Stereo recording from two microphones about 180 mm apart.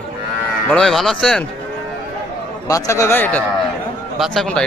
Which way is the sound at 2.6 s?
20° left (ahead or behind).